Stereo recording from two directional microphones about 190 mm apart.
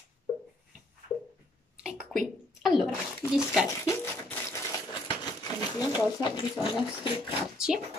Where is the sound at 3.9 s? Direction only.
15° left (ahead or behind).